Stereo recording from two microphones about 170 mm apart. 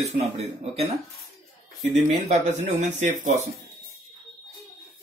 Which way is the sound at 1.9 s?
40° right (ahead or behind).